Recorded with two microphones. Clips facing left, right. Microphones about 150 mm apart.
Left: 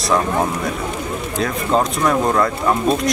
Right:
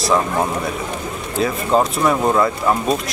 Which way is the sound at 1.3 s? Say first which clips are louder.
Right 2 dB; 5° right (ahead or behind).